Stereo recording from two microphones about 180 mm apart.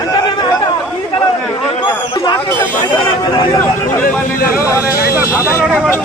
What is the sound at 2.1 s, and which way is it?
Speech, 25° left (ahead or behind).